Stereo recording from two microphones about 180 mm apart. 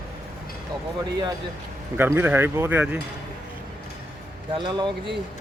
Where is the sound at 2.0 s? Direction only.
10° right (ahead or behind).